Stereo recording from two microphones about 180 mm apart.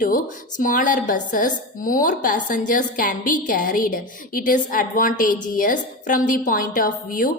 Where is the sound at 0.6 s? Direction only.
45° left (ahead or behind).